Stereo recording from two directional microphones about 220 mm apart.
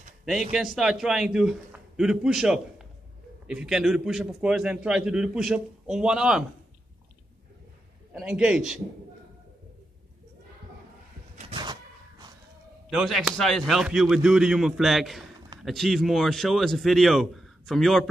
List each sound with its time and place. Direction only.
0.5 s a man's voice: centre (ahead or behind)
8.1 s a man's voice: 5° right (ahead or behind)
11.3 s a sound: 25° right (ahead or behind)
12.9 s a man's voice: centre (ahead or behind)